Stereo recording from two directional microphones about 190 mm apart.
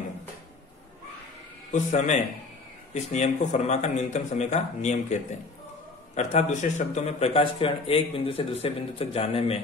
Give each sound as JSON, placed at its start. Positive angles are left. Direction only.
{"t": 1.7, "sound": "speech", "side_deg": 40}